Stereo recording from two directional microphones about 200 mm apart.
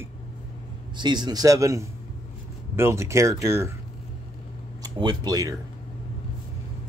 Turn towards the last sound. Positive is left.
turn(degrees=-20)  # may be behind; listen again after turning